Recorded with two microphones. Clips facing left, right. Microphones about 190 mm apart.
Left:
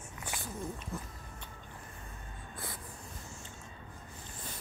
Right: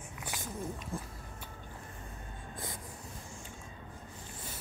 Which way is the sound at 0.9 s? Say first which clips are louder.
Right 1 dB; 30° right (ahead or behind).